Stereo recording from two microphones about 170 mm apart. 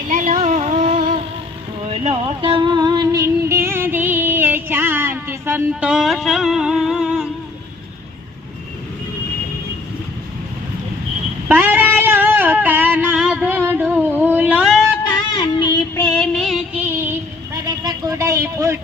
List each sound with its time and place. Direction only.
0.1 s vehicle: 50° right (ahead or behind)
1.9 s music: 35° right (ahead or behind); by 7.3 s 5° right (ahead or behind)
11.4 s a sound: 10° right (ahead or behind)
15.4 s child singing: 25° left (ahead or behind)
16.0 s music: 5° left (ahead or behind)
16.8 s a sound: 10° right (ahead or behind)